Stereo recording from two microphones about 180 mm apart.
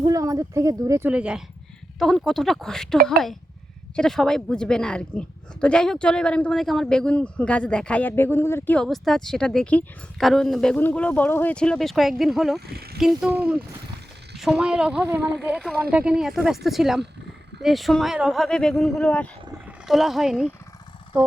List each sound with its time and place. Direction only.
0.0 s a woman's voice: 20° right (ahead or behind); by 12.5 s centre (ahead or behind)
12.5 s speech: 60° right (ahead or behind)
13.0 s a woman's voice: centre (ahead or behind)